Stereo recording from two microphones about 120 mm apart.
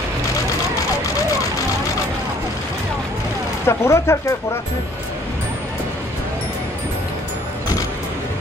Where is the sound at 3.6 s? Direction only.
20° left (ahead or behind).